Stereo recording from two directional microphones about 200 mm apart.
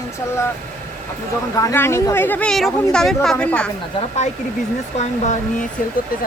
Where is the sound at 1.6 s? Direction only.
15° left (ahead or behind).